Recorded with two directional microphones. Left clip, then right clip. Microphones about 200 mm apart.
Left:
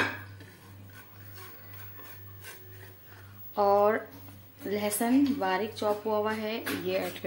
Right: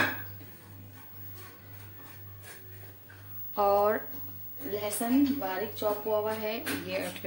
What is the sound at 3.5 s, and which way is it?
Speech, centre (ahead or behind).